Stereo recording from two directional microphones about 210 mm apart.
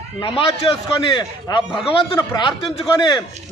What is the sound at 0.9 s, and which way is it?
A man's voice, 20° left (ahead or behind).